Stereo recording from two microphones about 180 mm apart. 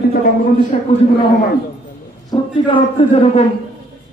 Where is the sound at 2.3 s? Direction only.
30° left (ahead or behind).